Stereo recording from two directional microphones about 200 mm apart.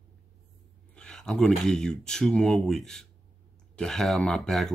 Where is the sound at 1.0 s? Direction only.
5° left (ahead or behind).